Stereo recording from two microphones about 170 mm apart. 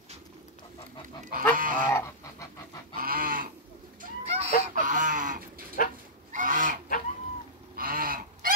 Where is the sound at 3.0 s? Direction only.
55° right (ahead or behind).